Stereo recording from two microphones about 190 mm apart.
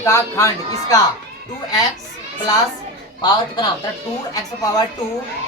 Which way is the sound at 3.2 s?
20° left (ahead or behind).